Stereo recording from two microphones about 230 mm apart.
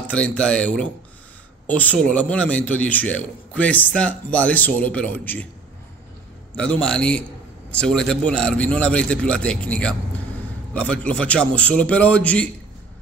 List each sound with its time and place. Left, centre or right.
0.0 s a man's voice: centre
6.5 s a man's voice: centre